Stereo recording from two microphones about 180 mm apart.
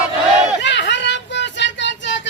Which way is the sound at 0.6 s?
80° left.